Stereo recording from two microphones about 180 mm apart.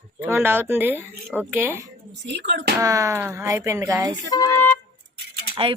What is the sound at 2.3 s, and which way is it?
Speech, 70° right (ahead or behind).